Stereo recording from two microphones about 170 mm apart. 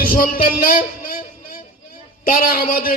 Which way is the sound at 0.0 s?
55° left (ahead or behind).